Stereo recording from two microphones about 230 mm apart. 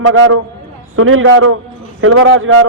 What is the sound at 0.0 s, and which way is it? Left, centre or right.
Speech, right.